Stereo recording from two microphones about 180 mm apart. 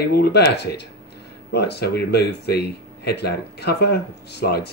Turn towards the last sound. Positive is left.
turn(degrees=65)  # may be behind; listen again after turning